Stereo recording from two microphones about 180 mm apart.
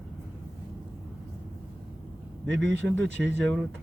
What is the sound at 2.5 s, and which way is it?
Speech, 85° right.